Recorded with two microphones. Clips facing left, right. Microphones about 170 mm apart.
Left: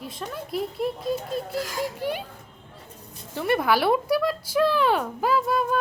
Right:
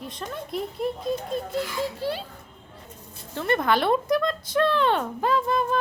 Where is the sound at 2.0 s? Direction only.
15° left (ahead or behind).